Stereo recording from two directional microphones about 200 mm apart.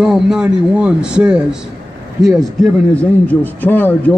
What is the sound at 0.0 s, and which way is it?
A man's voice, centre (ahead or behind).